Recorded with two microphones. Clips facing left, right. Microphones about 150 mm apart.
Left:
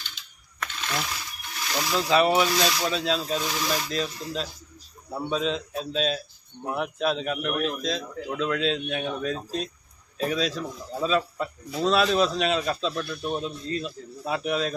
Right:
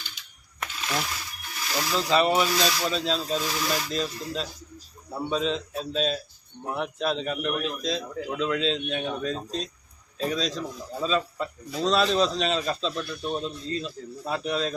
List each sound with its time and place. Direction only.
1.7 s a man's voice: 5° left (ahead or behind)